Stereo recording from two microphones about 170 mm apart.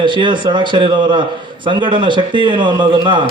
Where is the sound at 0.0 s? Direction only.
30° right (ahead or behind).